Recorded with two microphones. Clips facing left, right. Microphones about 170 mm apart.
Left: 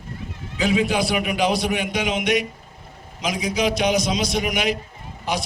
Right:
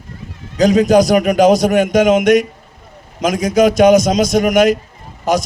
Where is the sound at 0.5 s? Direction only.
40° right (ahead or behind).